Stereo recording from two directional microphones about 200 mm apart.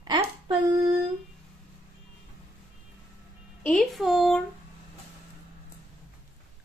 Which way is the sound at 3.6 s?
Centre (ahead or behind).